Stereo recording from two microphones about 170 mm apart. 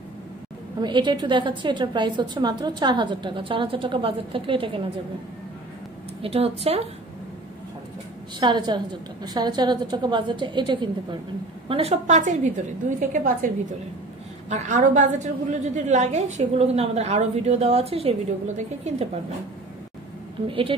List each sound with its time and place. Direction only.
0.7 s a woman's voice: 25° right (ahead or behind)
6.2 s a woman's voice: 35° right (ahead or behind)
8.4 s a woman's voice: 25° right (ahead or behind)
11.7 s a woman's voice: 40° right (ahead or behind)
14.5 s a woman's voice: 50° right (ahead or behind)
20.4 s a woman's voice: 30° right (ahead or behind)